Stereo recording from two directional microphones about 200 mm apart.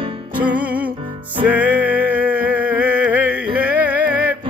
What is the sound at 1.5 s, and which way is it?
Music, 10° right (ahead or behind).